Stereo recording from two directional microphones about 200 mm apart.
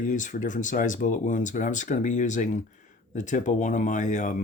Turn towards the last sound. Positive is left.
turn(degrees=40)  # may be behind; listen again after turning